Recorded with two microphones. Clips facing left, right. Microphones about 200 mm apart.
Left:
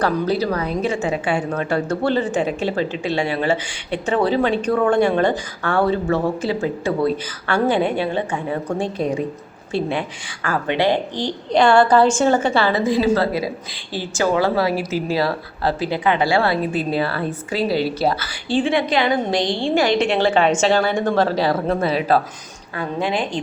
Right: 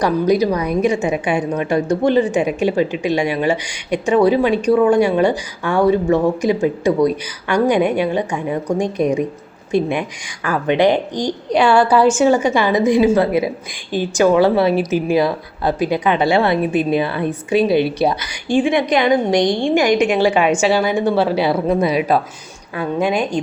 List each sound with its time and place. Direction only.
0.0 s a woman's voice: 15° right (ahead or behind)